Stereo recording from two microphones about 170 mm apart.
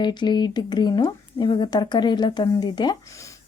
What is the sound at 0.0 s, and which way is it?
Speech, 25° left (ahead or behind).